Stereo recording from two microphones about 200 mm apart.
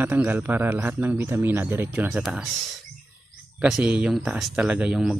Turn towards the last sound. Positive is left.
turn(degrees=-5)  # may be behind; listen again after turning